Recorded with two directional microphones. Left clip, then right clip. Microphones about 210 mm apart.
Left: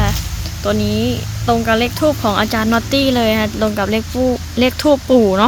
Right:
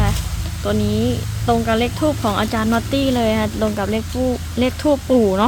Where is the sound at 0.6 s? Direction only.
10° left (ahead or behind).